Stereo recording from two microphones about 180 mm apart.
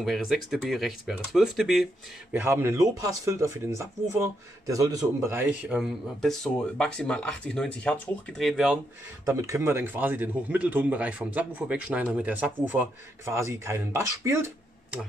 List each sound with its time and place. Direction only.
0.0 s speech: centre (ahead or behind)
2.3 s speech: 10° right (ahead or behind)
5.8 s speech: centre (ahead or behind)
9.2 s speech: 15° right (ahead or behind)